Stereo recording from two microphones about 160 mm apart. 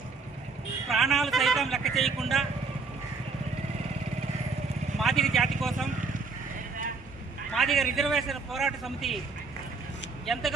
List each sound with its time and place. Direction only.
0.9 s speech: centre (ahead or behind)
4.9 s a man's voice: centre (ahead or behind)
7.5 s a man's voice: centre (ahead or behind)
10.3 s a man's voice: centre (ahead or behind)